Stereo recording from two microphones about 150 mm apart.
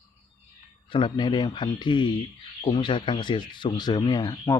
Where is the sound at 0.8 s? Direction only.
35° left (ahead or behind).